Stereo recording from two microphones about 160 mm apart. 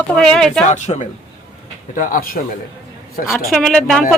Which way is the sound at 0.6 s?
45° left (ahead or behind).